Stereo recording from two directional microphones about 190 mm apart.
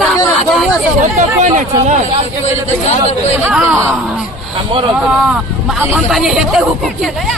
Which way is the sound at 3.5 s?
5° right (ahead or behind).